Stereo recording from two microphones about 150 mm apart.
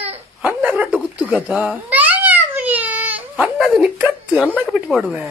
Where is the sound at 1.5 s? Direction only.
10° right (ahead or behind).